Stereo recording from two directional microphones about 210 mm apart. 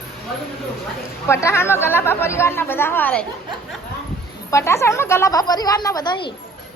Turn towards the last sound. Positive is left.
turn(degrees=20)  # may be behind; listen again after turning